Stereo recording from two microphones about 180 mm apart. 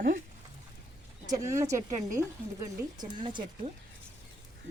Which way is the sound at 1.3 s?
15° right (ahead or behind).